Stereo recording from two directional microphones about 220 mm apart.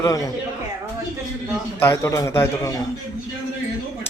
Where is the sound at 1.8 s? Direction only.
10° left (ahead or behind).